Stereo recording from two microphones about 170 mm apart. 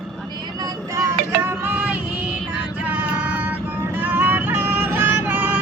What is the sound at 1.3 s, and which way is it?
Music, 10° right (ahead or behind).